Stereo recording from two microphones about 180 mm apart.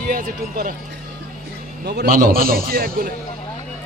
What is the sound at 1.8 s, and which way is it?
A man's voice, 55° right (ahead or behind).